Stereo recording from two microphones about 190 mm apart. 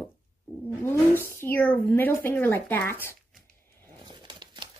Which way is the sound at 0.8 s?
10° left (ahead or behind).